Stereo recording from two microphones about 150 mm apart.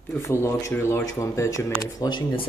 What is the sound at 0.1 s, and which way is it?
Speech, 15° left (ahead or behind).